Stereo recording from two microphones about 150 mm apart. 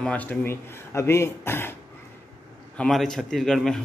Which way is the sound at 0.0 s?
10° left (ahead or behind).